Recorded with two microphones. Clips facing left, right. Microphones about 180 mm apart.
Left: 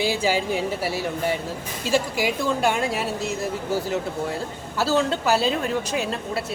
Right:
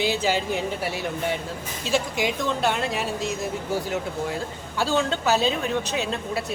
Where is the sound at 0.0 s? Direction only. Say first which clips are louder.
Left 1 dB; 10° left (ahead or behind).